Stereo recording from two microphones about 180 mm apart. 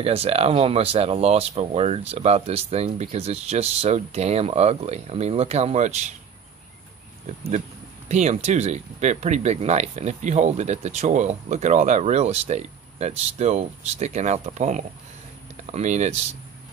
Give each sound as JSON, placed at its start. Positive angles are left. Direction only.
{"t": 0.0, "sound": "speech", "side_deg": -35}
{"t": 7.3, "sound": "speech", "side_deg": -40}